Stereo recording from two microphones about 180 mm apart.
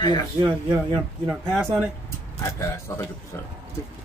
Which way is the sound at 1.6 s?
15° right (ahead or behind).